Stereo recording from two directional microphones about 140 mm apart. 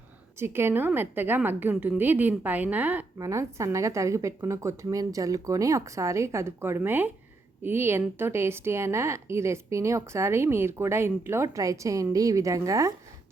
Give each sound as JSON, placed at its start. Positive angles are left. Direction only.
{"t": 0.3, "sound": "a woman's voice", "side_deg": -15}
{"t": 3.2, "sound": "a woman's voice", "side_deg": -20}